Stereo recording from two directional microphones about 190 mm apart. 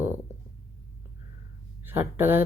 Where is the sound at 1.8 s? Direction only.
10° right (ahead or behind).